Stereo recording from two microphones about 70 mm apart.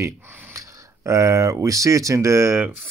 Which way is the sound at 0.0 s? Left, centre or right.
Right.